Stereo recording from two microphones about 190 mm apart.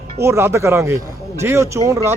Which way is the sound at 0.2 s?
15° right (ahead or behind).